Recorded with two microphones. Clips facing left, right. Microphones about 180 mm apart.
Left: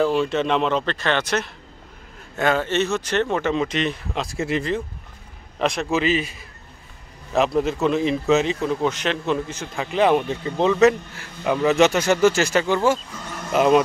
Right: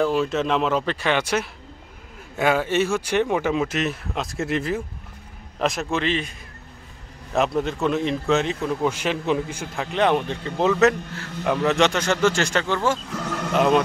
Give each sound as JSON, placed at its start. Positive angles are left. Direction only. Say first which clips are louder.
{"t": 0.0, "sound": "speech", "louder": "left 1 dB", "side_deg": 0}
{"t": 7.3, "sound": "speech", "louder": "left 2 dB", "side_deg": 0}
{"t": 9.8, "sound": "speech", "louder": "left 2 dB", "side_deg": 5}
{"t": 13.1, "sound": "speech", "louder": "right 6 dB", "side_deg": -80}
{"t": 13.5, "sound": "a man's voice", "louder": "left 2 dB", "side_deg": 5}